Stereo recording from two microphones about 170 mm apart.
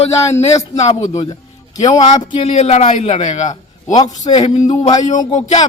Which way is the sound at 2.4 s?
40° left (ahead or behind).